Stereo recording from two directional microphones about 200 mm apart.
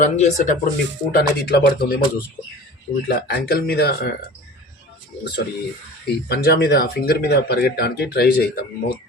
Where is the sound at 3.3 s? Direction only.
50° left (ahead or behind).